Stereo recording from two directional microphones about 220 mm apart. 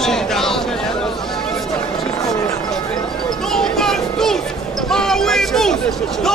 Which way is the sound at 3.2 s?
Centre (ahead or behind).